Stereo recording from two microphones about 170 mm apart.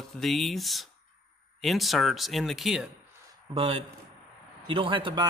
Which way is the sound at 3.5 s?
35° right (ahead or behind).